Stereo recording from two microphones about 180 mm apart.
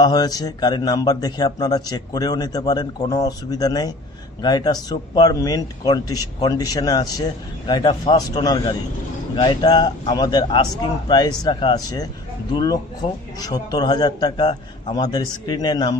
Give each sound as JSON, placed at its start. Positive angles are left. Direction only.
{"t": 0.0, "sound": "a man's voice", "side_deg": 20}